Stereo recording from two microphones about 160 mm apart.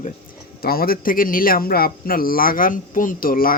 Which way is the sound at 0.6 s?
70° left (ahead or behind).